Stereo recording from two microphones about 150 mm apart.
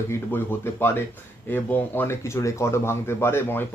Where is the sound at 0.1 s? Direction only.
15° left (ahead or behind).